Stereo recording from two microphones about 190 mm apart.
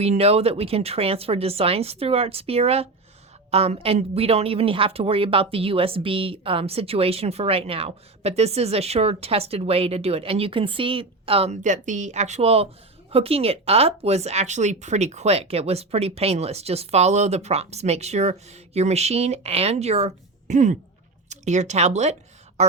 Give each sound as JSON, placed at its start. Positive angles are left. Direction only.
{"t": 0.0, "sound": "speech", "side_deg": -35}